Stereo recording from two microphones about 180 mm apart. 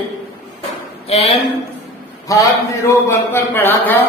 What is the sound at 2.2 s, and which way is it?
A man's voice, 20° left (ahead or behind).